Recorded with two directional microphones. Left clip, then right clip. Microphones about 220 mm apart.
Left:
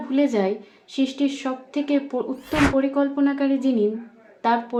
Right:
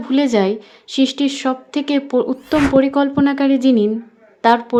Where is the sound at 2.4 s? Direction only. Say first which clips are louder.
Right 4 dB; centre (ahead or behind).